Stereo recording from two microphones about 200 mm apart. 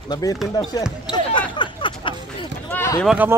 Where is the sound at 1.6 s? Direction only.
25° left (ahead or behind).